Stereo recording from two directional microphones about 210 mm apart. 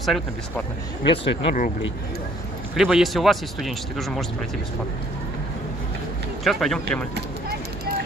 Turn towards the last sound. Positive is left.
turn(degrees=5)  # may be behind; listen again after turning